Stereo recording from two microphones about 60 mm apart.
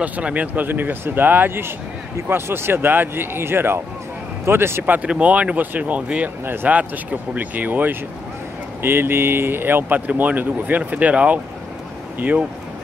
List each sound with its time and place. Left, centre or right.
0.0 s speech: right
4.8 s speech: right
6.4 s speech: right
6.8 s speech: right
8.8 s speech: right